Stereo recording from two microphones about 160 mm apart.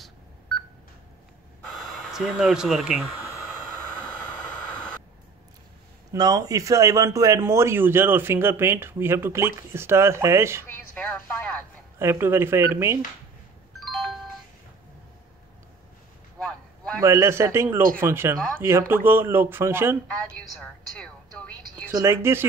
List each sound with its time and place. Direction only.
1.7 s speech: centre (ahead or behind)
4.0 s vehicle: 10° left (ahead or behind)
6.1 s a man's voice: 25° right (ahead or behind)
10.7 s a woman's voice: 10° left (ahead or behind)
12.0 s a man's voice: 15° right (ahead or behind)
13.7 s doorbell: centre (ahead or behind)
16.3 s a sound: 5° left (ahead or behind)
17.0 s a man's voice: 15° right (ahead or behind)
20.5 s music: 5° left (ahead or behind)
21.8 s a man's voice: 15° right (ahead or behind)